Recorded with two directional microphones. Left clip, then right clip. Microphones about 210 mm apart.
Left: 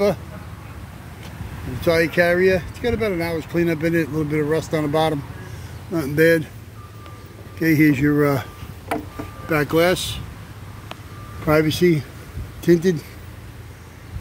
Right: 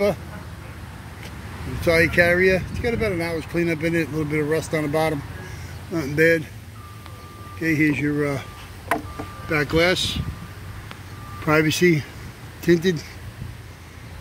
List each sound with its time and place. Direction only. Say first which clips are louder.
1.8 s speech: even; 10° left (ahead or behind)
7.6 s speech: left 4 dB; 25° left (ahead or behind)
9.5 s speech: left 2 dB; 15° left (ahead or behind)
11.4 s speech: left 1 dB; 5° left (ahead or behind)